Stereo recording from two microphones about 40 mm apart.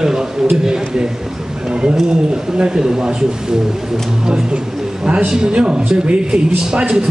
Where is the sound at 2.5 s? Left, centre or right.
Right.